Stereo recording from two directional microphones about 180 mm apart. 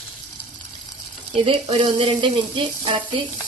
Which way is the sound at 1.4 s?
30° right (ahead or behind).